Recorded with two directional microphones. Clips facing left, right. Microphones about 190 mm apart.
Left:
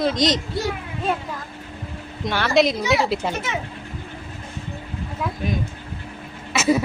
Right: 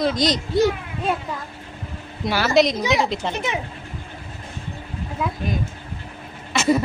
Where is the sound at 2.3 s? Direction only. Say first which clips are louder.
Right 1 dB; 5° right (ahead or behind).